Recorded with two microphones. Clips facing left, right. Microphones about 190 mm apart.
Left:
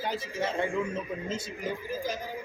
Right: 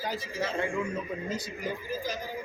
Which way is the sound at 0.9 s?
25° left (ahead or behind).